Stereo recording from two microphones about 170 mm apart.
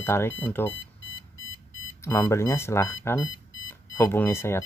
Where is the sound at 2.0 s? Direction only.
15° left (ahead or behind).